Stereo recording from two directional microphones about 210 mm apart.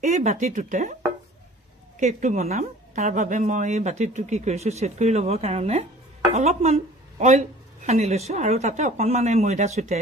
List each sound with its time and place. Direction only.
0.0 s a woman's voice: 35° right (ahead or behind)
2.0 s a woman's voice: 35° right (ahead or behind)